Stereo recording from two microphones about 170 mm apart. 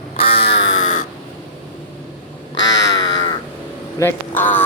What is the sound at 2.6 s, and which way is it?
Crow, 90° left.